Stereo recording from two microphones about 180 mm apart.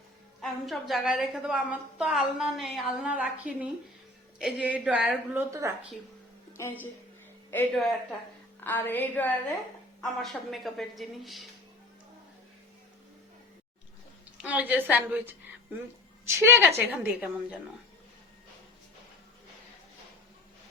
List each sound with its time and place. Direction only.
0.4 s a woman's voice: centre (ahead or behind)
5.5 s a woman's voice: 15° right (ahead or behind)
6.6 s a woman's voice: 15° left (ahead or behind); by 11.4 s centre (ahead or behind)
14.4 s a woman's voice: 10° right (ahead or behind)